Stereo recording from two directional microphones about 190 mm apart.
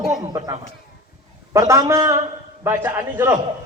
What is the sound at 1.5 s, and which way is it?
A woman's voice, 15° right (ahead or behind).